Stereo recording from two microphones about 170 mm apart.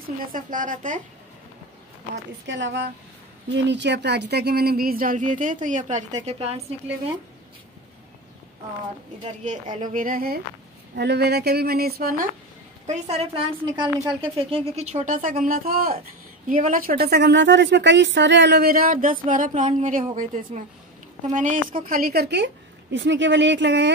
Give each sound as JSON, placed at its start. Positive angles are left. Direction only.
{"t": 0.2, "sound": "speech", "side_deg": -50}
{"t": 2.4, "sound": "a woman's voice", "side_deg": -90}
{"t": 9.4, "sound": "speech", "side_deg": -45}
{"t": 11.0, "sound": "a woman's voice", "side_deg": -75}
{"t": 12.8, "sound": "a woman's voice", "side_deg": -40}